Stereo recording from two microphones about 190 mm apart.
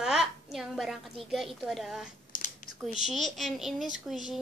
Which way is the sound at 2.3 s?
45° left (ahead or behind).